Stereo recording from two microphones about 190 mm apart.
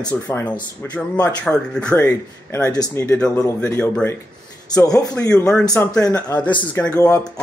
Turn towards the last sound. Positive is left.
turn(degrees=15)  # may be behind; listen again after turning